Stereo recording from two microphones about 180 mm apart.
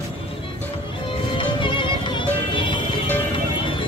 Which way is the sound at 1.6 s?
25° left (ahead or behind).